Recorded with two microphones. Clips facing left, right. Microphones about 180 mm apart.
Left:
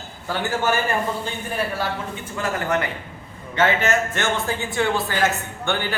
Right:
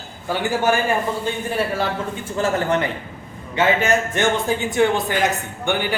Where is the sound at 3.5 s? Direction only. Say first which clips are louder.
Right 2 dB; 15° right (ahead or behind).